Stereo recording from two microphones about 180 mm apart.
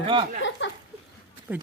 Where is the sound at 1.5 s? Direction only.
5° right (ahead or behind).